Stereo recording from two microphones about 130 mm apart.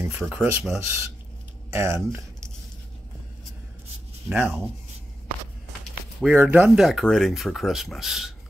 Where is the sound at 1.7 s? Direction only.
20° right (ahead or behind).